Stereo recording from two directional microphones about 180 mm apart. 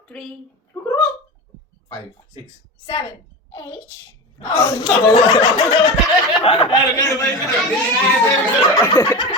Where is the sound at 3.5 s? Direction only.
20° left (ahead or behind).